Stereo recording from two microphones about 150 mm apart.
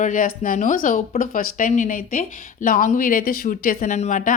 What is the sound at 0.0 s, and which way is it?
A woman's voice, 65° left (ahead or behind).